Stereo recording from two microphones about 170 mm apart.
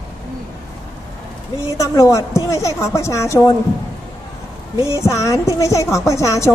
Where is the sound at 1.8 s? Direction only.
20° left (ahead or behind).